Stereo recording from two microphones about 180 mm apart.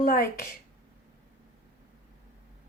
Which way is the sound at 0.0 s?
50° left (ahead or behind).